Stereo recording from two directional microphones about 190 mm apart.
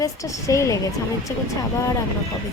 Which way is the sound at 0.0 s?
15° left (ahead or behind).